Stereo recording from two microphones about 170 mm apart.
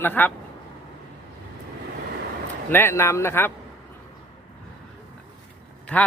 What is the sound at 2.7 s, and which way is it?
Speech, 15° left (ahead or behind).